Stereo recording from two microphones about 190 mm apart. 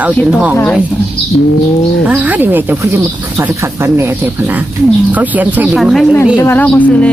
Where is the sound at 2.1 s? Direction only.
10° right (ahead or behind).